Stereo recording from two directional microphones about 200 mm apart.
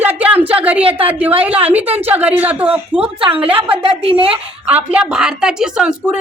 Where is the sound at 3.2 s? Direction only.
25° right (ahead or behind).